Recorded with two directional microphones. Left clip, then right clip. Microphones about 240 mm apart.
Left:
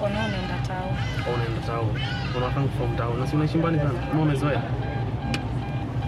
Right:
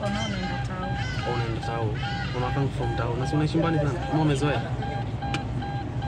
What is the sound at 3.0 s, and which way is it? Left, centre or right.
Speech, centre.